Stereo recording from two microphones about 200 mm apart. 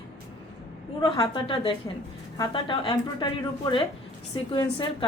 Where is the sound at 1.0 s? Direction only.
20° left (ahead or behind).